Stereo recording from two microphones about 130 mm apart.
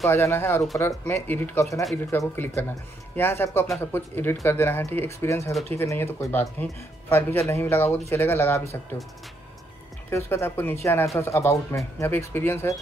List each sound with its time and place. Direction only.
0.1 s speech: 15° left (ahead or behind)
10.0 s speech: 20° left (ahead or behind)